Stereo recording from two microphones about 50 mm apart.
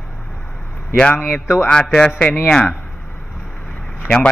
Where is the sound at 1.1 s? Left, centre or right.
Left.